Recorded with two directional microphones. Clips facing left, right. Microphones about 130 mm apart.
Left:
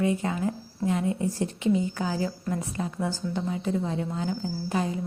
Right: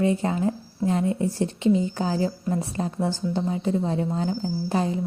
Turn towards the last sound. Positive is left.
turn(degrees=-30)  # may be behind; listen again after turning